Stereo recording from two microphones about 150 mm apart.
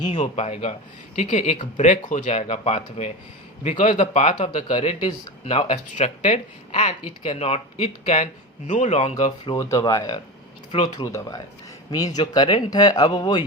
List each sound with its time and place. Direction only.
0.1 s speech: 50° left (ahead or behind)
3.6 s speech: 55° left (ahead or behind)
9.6 s speech: 20° left (ahead or behind)
10.7 s speech: 35° left (ahead or behind)
11.0 s speech: 20° left (ahead or behind)